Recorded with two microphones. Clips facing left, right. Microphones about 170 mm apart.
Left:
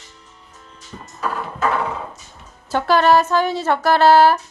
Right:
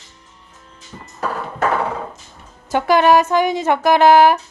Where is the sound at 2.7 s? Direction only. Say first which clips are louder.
Right 2 dB; 15° right (ahead or behind).